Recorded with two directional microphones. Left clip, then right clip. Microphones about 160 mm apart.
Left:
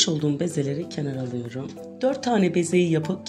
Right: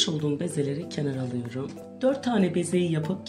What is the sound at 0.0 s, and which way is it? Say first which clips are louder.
Speech: left 3 dB; 40° left (ahead or behind).